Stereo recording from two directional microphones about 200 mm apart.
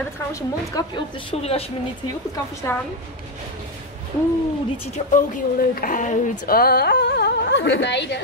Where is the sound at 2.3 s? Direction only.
10° left (ahead or behind).